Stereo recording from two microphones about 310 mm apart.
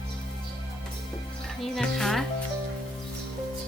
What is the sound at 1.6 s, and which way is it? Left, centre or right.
Music, centre.